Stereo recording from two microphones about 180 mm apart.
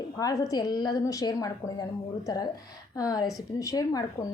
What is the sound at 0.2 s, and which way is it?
A woman's voice, 20° left (ahead or behind).